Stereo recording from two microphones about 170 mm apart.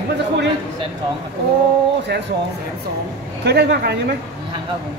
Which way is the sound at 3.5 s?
75° right (ahead or behind).